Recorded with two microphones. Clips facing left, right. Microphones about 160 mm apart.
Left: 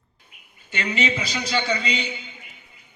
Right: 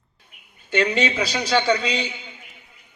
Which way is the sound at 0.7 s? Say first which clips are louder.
Right 5 dB; 70° right (ahead or behind).